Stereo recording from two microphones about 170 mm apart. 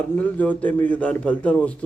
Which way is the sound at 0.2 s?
10° left (ahead or behind).